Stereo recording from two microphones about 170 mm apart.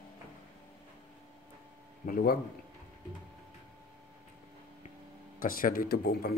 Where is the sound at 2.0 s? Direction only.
60° left (ahead or behind).